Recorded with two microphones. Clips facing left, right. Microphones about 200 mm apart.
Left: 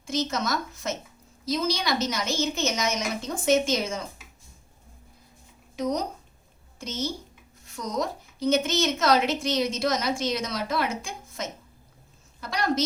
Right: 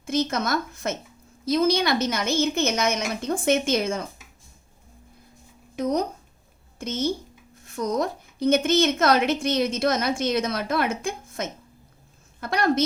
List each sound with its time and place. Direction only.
0.0 s a woman's voice: 55° right (ahead or behind)
5.7 s a woman's voice: 55° right (ahead or behind)